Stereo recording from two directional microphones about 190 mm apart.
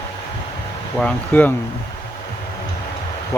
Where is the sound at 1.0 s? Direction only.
5° left (ahead or behind).